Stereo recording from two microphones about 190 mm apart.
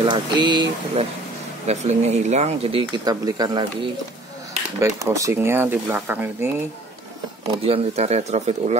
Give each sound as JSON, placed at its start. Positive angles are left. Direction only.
{"t": 0.0, "sound": "speech", "side_deg": -25}
{"t": 1.7, "sound": "speech", "side_deg": -35}
{"t": 4.7, "sound": "speech", "side_deg": -15}
{"t": 7.6, "sound": "speech", "side_deg": -30}